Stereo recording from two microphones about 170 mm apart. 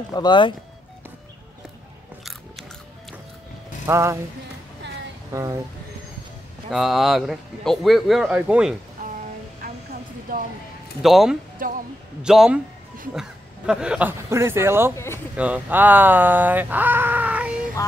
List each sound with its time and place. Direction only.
0.1 s speech: 25° left (ahead or behind)
3.8 s speech: 15° right (ahead or behind)
5.3 s speech: 20° right (ahead or behind)
6.7 s speech: centre (ahead or behind)
10.3 s speech: 55° right (ahead or behind)
11.0 s speech: centre (ahead or behind)
11.6 s speech: 55° right (ahead or behind)
12.2 s speech: 5° right (ahead or behind)
17.8 s speech: 20° left (ahead or behind)